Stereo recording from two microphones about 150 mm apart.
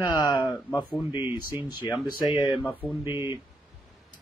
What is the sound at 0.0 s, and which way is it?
Speech, 25° left (ahead or behind).